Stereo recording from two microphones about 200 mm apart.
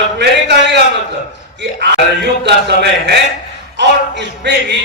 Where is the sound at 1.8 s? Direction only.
60° right (ahead or behind).